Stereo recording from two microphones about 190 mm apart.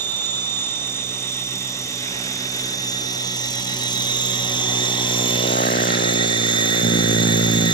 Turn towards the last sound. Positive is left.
turn(degrees=25)  # may be behind; listen again after turning